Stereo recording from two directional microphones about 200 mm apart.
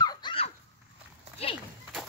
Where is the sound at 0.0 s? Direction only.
25° left (ahead or behind).